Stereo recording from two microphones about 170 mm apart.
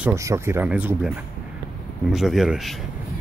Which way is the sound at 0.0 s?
15° right (ahead or behind).